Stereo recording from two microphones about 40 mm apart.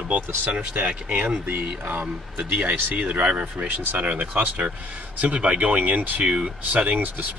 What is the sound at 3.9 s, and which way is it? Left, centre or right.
Speech, right.